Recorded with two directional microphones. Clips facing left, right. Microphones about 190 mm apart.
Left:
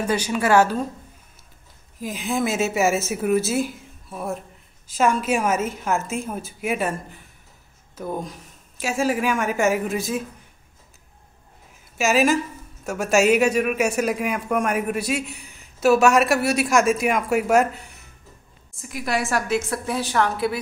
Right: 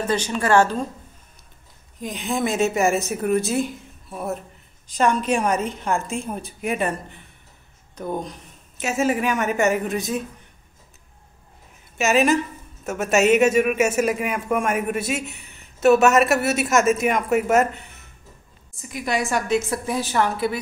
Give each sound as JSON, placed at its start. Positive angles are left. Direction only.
{"t": 0.0, "sound": "a woman's voice", "side_deg": 10}
{"t": 2.0, "sound": "a man's voice", "side_deg": 0}
{"t": 12.0, "sound": "a man's voice", "side_deg": 0}